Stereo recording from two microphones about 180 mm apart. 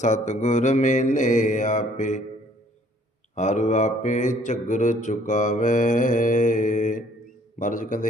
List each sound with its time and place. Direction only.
0.0 s mantra: 40° left (ahead or behind)
3.3 s mantra: 40° left (ahead or behind)